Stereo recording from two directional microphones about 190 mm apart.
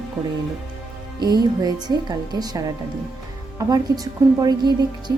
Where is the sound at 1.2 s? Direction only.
20° right (ahead or behind).